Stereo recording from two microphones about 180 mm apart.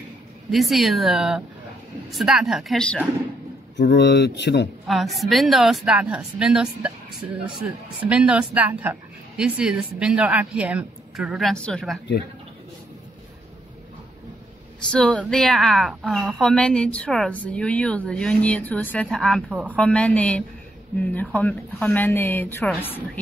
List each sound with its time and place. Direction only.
0.5 s a woman's voice: centre (ahead or behind)
3.8 s speech: 70° left (ahead or behind)
4.8 s a woman's voice: centre (ahead or behind)
14.9 s a woman's voice: 5° left (ahead or behind)